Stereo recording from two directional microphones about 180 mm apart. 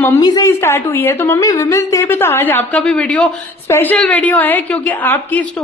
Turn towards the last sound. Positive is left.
turn(degrees=10)  # may be behind; listen again after turning